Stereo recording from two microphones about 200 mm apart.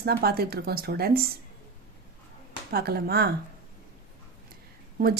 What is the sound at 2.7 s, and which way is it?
Speech, 50° right (ahead or behind).